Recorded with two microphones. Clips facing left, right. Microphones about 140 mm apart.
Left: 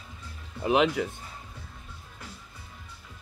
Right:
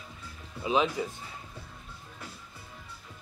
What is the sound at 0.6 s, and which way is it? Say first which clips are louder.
Speech: left 4 dB; 65° left (ahead or behind).